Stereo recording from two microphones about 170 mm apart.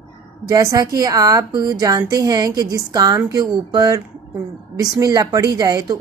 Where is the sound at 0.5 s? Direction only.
20° right (ahead or behind).